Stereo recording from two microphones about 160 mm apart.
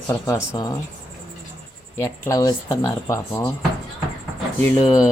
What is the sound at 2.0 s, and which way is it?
Speech, 15° left (ahead or behind).